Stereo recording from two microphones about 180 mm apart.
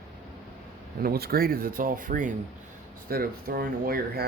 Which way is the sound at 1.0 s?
55° right (ahead or behind).